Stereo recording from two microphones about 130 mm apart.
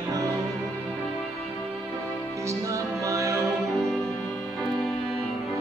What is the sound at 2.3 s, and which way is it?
Music, 25° right (ahead or behind).